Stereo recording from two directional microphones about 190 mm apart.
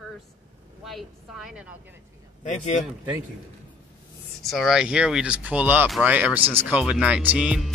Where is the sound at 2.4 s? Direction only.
40° left (ahead or behind).